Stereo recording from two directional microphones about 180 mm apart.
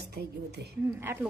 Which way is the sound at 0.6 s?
60° right (ahead or behind).